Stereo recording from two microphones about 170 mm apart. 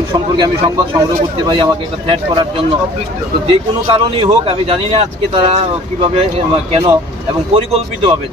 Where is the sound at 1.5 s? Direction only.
30° right (ahead or behind).